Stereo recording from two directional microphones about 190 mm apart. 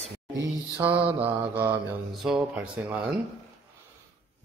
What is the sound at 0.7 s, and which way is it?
Mantra, 10° right (ahead or behind).